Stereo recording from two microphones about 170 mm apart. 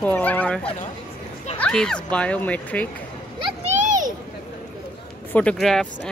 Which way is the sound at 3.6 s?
45° right (ahead or behind).